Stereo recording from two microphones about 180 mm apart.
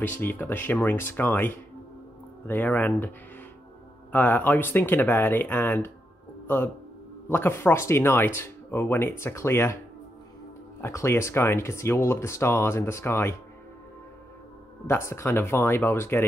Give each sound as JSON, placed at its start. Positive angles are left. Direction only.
{"t": 0.0, "sound": "speech", "side_deg": 10}
{"t": 4.1, "sound": "speech", "side_deg": 10}
{"t": 10.8, "sound": "speech", "side_deg": 15}
{"t": 14.9, "sound": "speech", "side_deg": 15}